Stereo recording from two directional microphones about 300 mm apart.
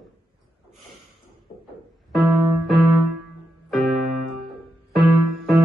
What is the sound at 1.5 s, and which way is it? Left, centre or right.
Music, left.